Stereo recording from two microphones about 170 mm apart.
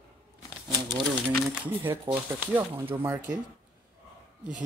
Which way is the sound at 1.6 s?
10° right (ahead or behind).